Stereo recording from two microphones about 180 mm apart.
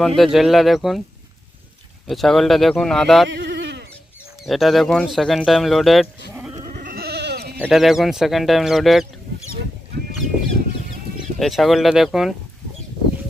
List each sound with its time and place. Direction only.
0.0 s speech: centre (ahead or behind)
2.0 s speech: centre (ahead or behind)
3.3 s a sound: 75° right (ahead or behind)
4.5 s speech: centre (ahead or behind)
6.7 s goat: 55° right (ahead or behind)
7.6 s speech: centre (ahead or behind)
11.3 s speech: centre (ahead or behind)